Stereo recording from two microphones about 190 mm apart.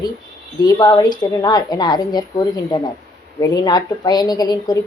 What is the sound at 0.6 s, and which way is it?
A woman's voice, 20° left (ahead or behind).